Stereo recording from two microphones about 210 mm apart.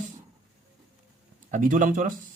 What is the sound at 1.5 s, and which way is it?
Speech, 40° right (ahead or behind).